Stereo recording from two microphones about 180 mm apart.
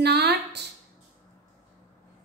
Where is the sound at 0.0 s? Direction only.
65° right (ahead or behind).